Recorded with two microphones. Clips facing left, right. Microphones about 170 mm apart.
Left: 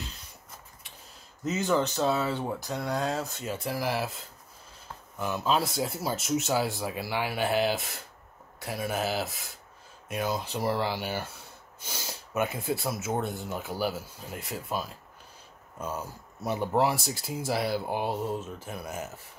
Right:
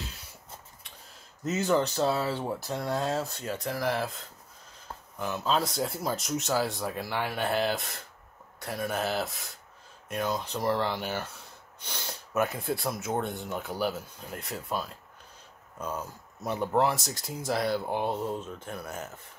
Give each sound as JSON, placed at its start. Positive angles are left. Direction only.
{"t": 1.5, "sound": "speech", "side_deg": 0}
{"t": 5.2, "sound": "speech", "side_deg": 10}